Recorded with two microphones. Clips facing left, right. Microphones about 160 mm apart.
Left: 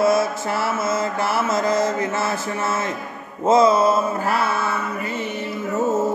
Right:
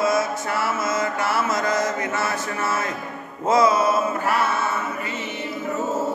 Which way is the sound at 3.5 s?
30° left (ahead or behind).